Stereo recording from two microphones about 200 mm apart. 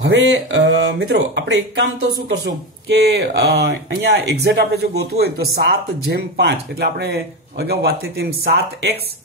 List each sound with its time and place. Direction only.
0.0 s speech: 60° right (ahead or behind)